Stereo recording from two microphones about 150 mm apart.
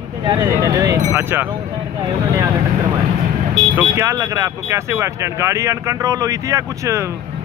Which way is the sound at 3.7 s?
20° right (ahead or behind).